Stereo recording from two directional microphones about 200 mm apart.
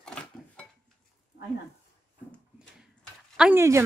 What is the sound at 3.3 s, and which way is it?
Speech, 5° right (ahead or behind).